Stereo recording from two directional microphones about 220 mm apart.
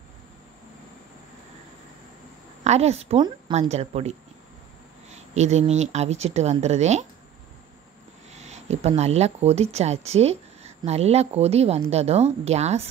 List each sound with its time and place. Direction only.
2.6 s speech: 30° right (ahead or behind)
5.1 s speech: 30° right (ahead or behind)
8.4 s speech: 30° right (ahead or behind)